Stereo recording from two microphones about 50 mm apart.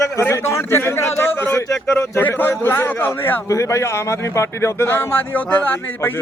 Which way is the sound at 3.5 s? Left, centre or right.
Left.